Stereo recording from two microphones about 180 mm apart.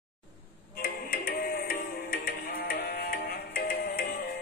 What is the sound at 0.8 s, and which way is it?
Music, 55° left (ahead or behind).